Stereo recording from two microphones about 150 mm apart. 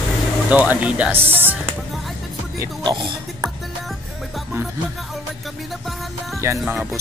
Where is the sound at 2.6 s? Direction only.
30° right (ahead or behind).